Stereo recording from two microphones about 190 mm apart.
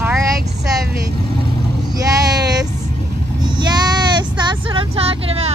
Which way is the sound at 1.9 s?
20° right (ahead or behind).